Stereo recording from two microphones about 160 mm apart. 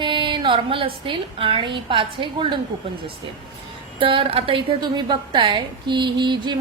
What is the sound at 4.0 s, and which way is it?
A woman's voice, 35° right (ahead or behind).